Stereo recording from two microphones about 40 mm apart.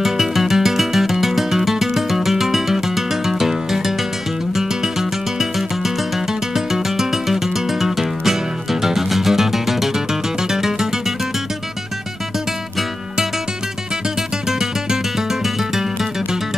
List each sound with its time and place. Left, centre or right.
0.0 s music: centre
6.5 s music: centre
14.6 s music: centre